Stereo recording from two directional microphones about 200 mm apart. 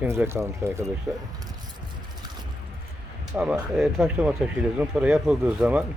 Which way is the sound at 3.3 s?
5° right (ahead or behind).